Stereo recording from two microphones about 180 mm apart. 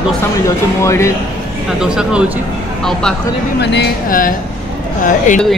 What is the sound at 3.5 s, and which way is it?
Speech, 70° left (ahead or behind).